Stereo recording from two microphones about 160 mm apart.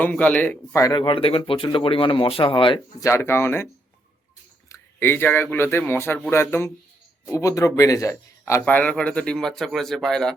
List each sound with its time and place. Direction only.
0.0 s speech: 10° left (ahead or behind); by 2.8 s 30° left (ahead or behind)
3.0 s speech: 15° left (ahead or behind)
4.7 s speech: 15° left (ahead or behind)